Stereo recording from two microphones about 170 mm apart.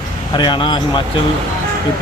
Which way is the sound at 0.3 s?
25° left (ahead or behind).